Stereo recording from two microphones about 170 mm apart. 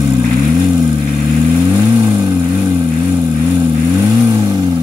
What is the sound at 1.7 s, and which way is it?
Vehicle, 20° right (ahead or behind).